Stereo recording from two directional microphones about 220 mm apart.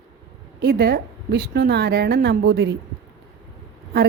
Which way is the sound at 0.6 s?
50° right (ahead or behind).